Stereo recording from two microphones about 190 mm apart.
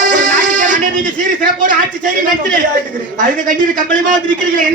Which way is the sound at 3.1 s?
45° right (ahead or behind).